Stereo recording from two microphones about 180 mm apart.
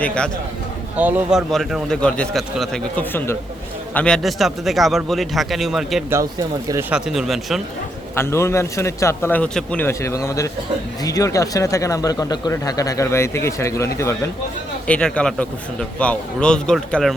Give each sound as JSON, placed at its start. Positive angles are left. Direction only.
{"t": 0.0, "sound": "speech", "side_deg": 5}
{"t": 0.9, "sound": "speech", "side_deg": -10}
{"t": 8.1, "sound": "speech", "side_deg": 15}